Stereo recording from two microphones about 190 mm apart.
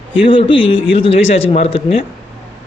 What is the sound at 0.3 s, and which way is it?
A man's voice, 25° left (ahead or behind).